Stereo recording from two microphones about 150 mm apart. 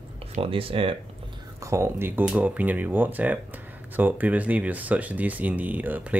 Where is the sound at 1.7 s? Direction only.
15° right (ahead or behind).